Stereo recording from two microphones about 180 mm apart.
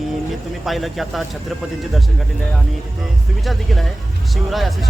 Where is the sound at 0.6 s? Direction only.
Centre (ahead or behind).